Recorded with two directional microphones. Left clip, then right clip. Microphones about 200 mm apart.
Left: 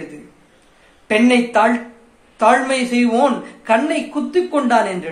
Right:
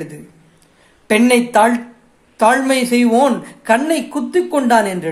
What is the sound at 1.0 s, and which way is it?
Speech, 50° right (ahead or behind).